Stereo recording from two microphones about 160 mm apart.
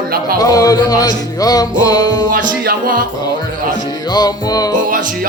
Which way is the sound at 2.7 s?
65° right (ahead or behind).